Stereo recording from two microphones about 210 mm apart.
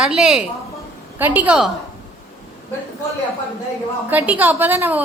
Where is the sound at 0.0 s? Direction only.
5° right (ahead or behind).